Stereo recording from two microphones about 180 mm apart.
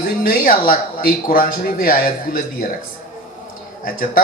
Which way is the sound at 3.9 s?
50° left (ahead or behind).